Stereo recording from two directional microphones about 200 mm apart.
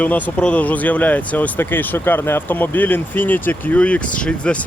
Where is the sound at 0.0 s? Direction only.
5° left (ahead or behind).